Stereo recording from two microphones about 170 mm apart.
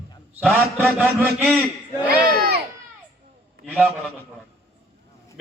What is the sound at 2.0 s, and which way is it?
Mantra, 5° right (ahead or behind).